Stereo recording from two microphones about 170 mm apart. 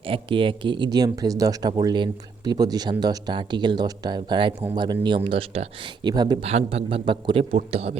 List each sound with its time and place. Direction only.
0.0 s speech: 30° right (ahead or behind)
6.4 s a man's voice: 40° right (ahead or behind)